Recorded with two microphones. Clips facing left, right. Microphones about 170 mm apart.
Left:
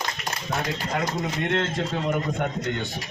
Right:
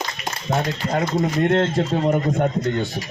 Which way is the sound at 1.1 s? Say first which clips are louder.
Right 7 dB; 40° right (ahead or behind).